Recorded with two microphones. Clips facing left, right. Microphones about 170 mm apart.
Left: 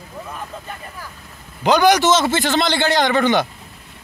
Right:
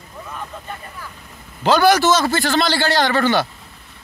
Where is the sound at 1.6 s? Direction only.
15° left (ahead or behind).